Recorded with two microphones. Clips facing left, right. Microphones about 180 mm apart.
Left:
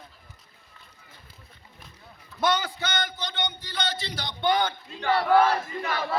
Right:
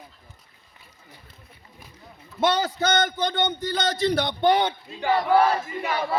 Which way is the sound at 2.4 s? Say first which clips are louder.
Right 4 dB; 35° right (ahead or behind).